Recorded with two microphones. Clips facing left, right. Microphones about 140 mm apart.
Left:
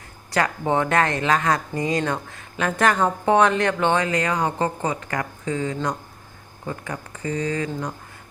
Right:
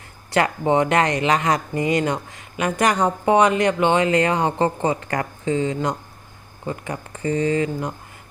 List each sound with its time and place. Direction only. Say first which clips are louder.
0.3 s speech: right 3 dB; 25° right (ahead or behind)